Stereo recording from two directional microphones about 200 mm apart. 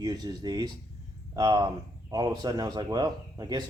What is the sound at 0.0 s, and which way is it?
Speech, 20° right (ahead or behind).